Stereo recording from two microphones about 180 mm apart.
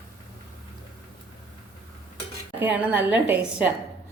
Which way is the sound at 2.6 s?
10° right (ahead or behind).